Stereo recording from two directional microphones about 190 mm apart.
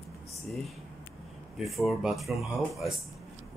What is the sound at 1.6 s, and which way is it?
Speech, centre (ahead or behind).